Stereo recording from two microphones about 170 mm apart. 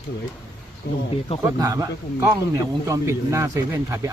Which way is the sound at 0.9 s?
70° left (ahead or behind).